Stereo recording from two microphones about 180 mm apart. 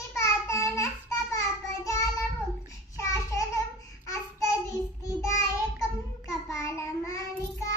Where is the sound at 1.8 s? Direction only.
15° left (ahead or behind).